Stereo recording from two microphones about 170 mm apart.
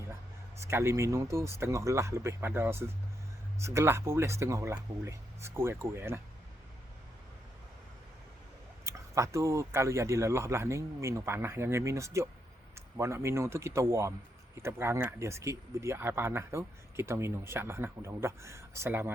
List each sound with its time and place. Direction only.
0.6 s speech: 15° right (ahead or behind)
8.8 s speech: 15° right (ahead or behind)